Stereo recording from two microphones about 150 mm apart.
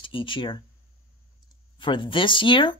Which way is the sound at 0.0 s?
35° left (ahead or behind).